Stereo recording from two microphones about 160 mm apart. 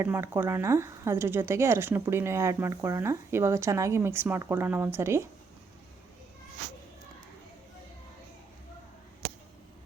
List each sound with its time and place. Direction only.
0.0 s speech: 15° right (ahead or behind)